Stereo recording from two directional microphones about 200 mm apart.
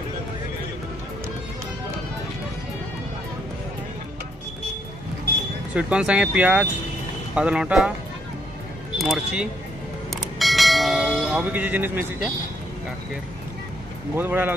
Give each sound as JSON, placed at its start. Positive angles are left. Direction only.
{"t": 5.8, "sound": "speech", "side_deg": -5}
{"t": 8.9, "sound": "speech", "side_deg": 0}
{"t": 10.4, "sound": "church bell", "side_deg": 0}
{"t": 14.1, "sound": "speech", "side_deg": -10}